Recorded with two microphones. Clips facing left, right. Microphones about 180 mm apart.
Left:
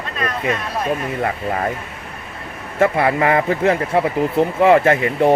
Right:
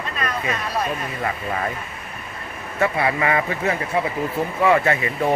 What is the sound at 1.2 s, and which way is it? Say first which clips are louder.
Speech: left 2 dB; 45° left (ahead or behind).